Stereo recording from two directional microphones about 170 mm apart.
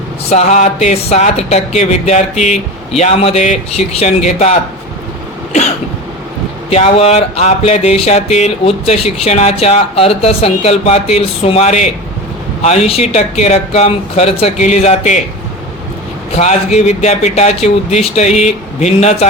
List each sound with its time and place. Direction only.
0.3 s speech: 45° left (ahead or behind)
6.7 s speech: 40° left (ahead or behind)
16.3 s speech: 40° left (ahead or behind)